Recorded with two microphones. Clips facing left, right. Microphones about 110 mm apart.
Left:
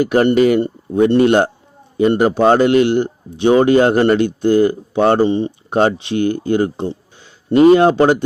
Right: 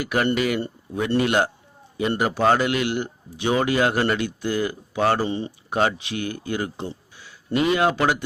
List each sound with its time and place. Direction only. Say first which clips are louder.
0.0 s a man's voice: left 10 dB; 35° left (ahead or behind)